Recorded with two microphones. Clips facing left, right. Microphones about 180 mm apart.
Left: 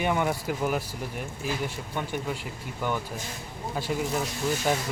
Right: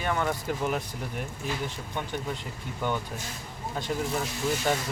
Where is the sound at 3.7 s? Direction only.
5° left (ahead or behind).